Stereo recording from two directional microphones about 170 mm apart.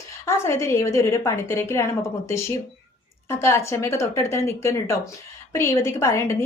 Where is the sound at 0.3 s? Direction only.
15° left (ahead or behind).